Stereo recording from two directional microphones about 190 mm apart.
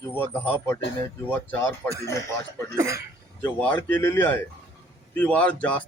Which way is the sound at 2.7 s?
15° right (ahead or behind).